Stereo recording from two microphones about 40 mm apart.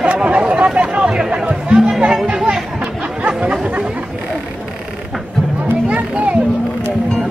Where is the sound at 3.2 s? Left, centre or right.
Right.